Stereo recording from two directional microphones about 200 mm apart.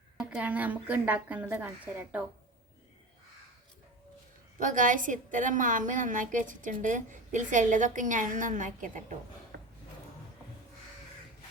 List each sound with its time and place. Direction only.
0.2 s a woman's voice: 5° right (ahead or behind)
4.6 s a woman's voice: 40° right (ahead or behind)